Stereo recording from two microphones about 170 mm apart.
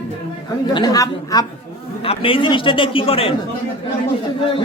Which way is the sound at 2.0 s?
30° left (ahead or behind).